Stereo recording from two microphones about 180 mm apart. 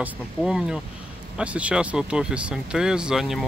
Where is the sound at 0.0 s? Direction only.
5° right (ahead or behind).